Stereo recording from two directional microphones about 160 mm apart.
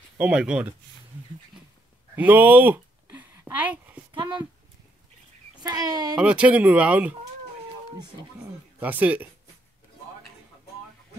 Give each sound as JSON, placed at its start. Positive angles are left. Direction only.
{"t": 0.2, "sound": "speech", "side_deg": -5}
{"t": 2.1, "sound": "a sound", "side_deg": -10}
{"t": 4.1, "sound": "speech", "side_deg": -30}
{"t": 5.6, "sound": "speech", "side_deg": -25}
{"t": 6.1, "sound": "speech", "side_deg": -5}
{"t": 8.7, "sound": "speech", "side_deg": -10}